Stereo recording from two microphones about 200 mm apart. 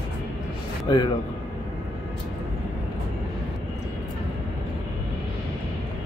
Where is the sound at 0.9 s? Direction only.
20° left (ahead or behind).